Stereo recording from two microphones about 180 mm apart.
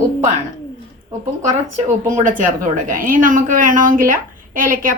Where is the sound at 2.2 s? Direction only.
50° right (ahead or behind).